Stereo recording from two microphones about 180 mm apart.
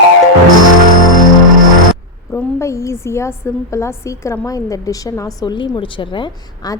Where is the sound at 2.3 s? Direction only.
15° left (ahead or behind).